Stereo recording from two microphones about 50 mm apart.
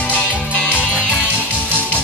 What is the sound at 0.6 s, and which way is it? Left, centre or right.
Music, right.